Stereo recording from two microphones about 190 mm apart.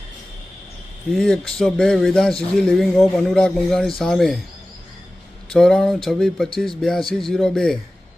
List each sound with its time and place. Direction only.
1.1 s speech: 5° left (ahead or behind)
5.5 s speech: 5° left (ahead or behind)